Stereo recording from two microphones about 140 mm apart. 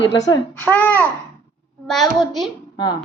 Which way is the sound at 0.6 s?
10° left (ahead or behind).